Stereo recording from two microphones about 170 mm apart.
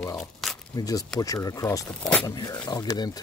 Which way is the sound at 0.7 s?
20° left (ahead or behind).